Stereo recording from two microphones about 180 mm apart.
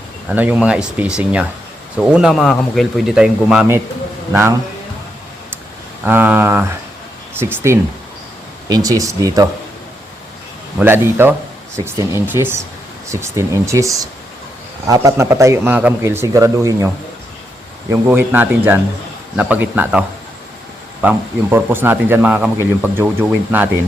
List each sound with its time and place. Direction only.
0.3 s a man's voice: 5° right (ahead or behind)
6.1 s a man's voice: 10° right (ahead or behind)
10.8 s a man's voice: 10° right (ahead or behind)